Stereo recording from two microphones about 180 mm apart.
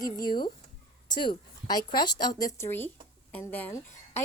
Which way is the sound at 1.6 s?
25° left (ahead or behind).